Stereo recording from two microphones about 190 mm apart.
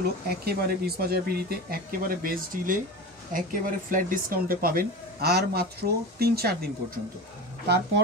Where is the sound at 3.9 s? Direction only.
45° right (ahead or behind).